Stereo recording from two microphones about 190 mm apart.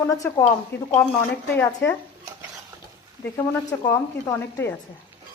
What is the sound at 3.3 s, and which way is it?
Speech, 15° left (ahead or behind).